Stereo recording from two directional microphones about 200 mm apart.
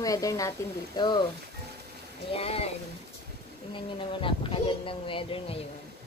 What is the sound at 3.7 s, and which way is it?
Speech, 25° left (ahead or behind).